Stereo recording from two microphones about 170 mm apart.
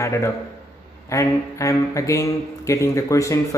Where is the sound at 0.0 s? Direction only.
15° left (ahead or behind).